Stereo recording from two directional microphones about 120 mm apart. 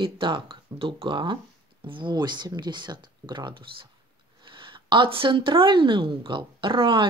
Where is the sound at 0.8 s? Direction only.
45° right (ahead or behind).